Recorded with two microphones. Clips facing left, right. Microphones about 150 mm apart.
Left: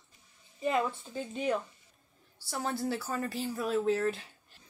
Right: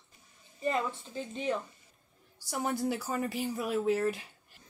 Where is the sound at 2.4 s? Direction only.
15° right (ahead or behind).